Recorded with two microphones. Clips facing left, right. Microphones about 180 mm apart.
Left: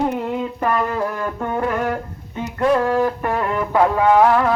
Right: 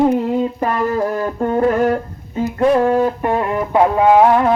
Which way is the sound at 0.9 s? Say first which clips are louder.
Right 5 dB; 35° right (ahead or behind).